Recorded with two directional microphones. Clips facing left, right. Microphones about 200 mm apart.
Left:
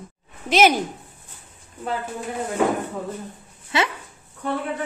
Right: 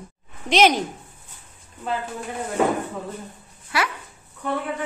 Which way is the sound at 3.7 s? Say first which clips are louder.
Left 2 dB; 25° left (ahead or behind).